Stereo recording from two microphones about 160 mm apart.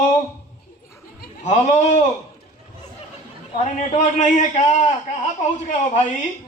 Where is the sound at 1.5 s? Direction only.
45° left (ahead or behind).